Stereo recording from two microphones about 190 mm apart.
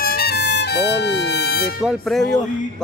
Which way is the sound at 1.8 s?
Centre (ahead or behind).